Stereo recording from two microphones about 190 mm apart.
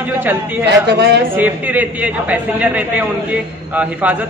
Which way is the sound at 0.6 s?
60° right (ahead or behind).